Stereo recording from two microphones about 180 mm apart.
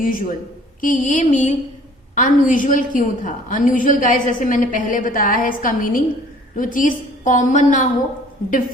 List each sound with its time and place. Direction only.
0.0 s a woman's voice: 50° left (ahead or behind)